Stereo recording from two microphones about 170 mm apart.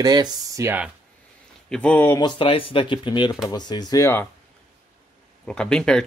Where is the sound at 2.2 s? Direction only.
30° left (ahead or behind).